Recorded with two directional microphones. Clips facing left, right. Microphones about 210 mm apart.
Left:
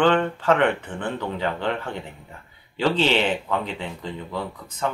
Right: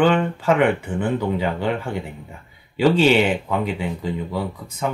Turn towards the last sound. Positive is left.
turn(degrees=-10)  # may be behind; listen again after turning